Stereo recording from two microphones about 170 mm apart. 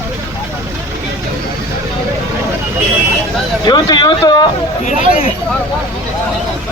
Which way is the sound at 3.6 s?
25° left (ahead or behind).